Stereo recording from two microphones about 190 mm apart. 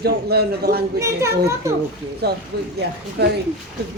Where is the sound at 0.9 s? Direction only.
15° right (ahead or behind).